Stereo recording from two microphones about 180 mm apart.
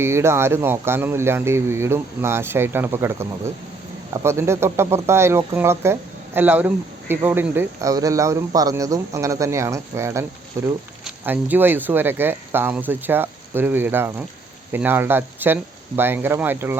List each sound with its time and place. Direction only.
0.0 s speech: 15° right (ahead or behind)